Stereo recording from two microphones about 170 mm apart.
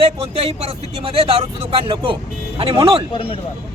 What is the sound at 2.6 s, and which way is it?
Speech, 30° right (ahead or behind).